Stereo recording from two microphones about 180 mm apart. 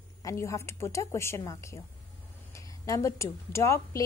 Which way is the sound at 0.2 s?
15° left (ahead or behind).